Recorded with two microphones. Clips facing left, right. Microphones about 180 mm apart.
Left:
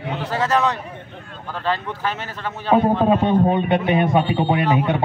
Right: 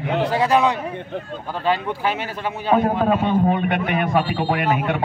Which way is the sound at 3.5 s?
25° left (ahead or behind).